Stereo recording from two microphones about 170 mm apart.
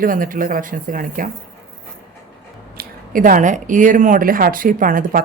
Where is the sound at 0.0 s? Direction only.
55° right (ahead or behind).